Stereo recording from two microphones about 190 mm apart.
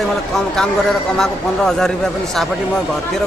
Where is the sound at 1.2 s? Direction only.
Centre (ahead or behind).